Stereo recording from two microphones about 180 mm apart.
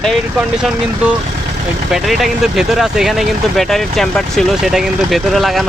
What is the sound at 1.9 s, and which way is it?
Speech, centre (ahead or behind).